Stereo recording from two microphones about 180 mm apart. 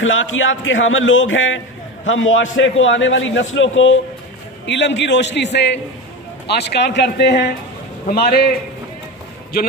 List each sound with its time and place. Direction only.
0.0 s a man's voice: 90° left; by 7.4 s 70° left (ahead or behind)
8.1 s a man's voice: 60° left (ahead or behind)